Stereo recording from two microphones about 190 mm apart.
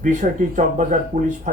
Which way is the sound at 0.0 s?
40° right (ahead or behind).